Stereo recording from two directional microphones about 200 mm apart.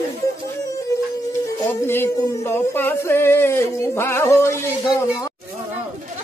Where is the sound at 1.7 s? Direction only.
10° left (ahead or behind).